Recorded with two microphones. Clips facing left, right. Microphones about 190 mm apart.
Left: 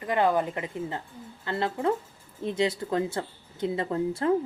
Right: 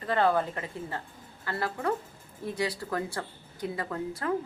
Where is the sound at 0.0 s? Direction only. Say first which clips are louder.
Left 1 dB; 15° left (ahead or behind).